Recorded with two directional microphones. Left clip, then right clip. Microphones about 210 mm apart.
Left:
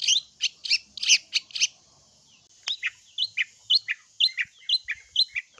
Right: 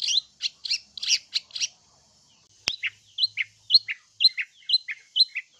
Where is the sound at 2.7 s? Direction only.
5° left (ahead or behind).